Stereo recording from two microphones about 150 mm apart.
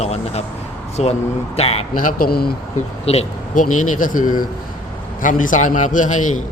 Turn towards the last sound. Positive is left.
turn(degrees=55)  # may be behind; listen again after turning